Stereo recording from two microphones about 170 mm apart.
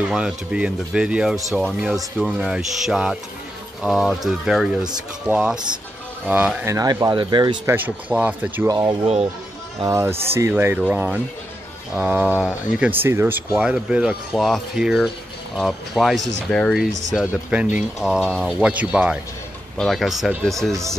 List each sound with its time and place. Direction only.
0.0 s speech: 5° right (ahead or behind); by 7.5 s 25° right (ahead or behind)
7.6 s speech: 10° right (ahead or behind)
8.6 s speech: 20° right (ahead or behind)
9.0 s speech: 40° right (ahead or behind)
9.8 s speech: 15° right (ahead or behind); by 20.7 s centre (ahead or behind)